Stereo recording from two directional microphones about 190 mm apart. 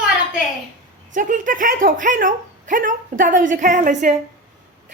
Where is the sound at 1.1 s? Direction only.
45° right (ahead or behind).